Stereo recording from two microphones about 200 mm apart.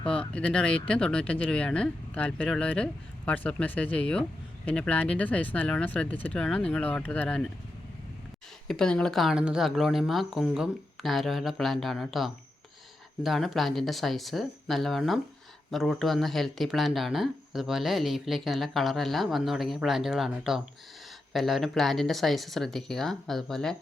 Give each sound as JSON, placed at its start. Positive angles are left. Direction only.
{"t": 0.0, "sound": "speech", "side_deg": 5}
{"t": 8.6, "sound": "speech", "side_deg": 5}